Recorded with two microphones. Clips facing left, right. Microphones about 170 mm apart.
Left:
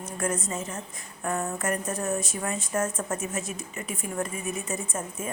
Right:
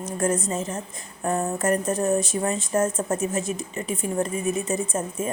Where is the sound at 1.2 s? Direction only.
30° right (ahead or behind).